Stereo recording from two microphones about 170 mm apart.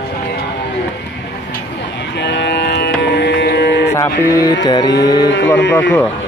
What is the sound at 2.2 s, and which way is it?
Music, 90° left.